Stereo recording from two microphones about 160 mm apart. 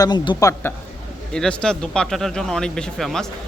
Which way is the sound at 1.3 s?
5° left (ahead or behind).